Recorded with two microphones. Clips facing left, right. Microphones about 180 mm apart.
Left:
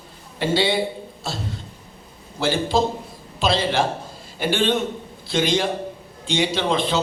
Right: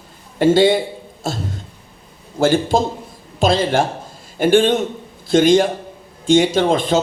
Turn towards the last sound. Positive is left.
turn(degrees=-45)  # may be behind; listen again after turning